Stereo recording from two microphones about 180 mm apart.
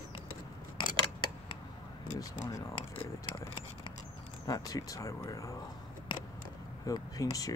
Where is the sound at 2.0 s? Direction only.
45° left (ahead or behind).